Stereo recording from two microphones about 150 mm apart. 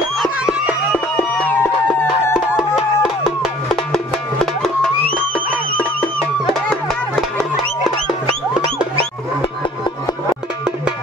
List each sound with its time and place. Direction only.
0.2 s a sound: 5° right (ahead or behind)
1.1 s music: 15° left (ahead or behind)
2.3 s music: 5° right (ahead or behind)
6.4 s music: centre (ahead or behind)
8.6 s music: 40° right (ahead or behind)